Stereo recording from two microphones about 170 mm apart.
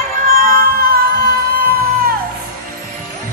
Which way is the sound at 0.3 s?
55° right (ahead or behind).